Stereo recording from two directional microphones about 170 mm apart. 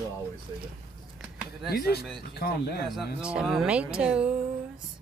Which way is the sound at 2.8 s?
5° right (ahead or behind).